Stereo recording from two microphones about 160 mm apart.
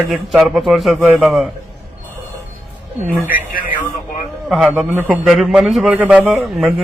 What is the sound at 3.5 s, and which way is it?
Speech, 60° left (ahead or behind).